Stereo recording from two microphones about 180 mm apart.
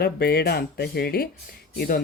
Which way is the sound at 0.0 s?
60° left (ahead or behind).